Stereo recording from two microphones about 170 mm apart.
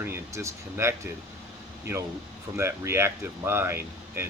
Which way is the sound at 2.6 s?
15° right (ahead or behind).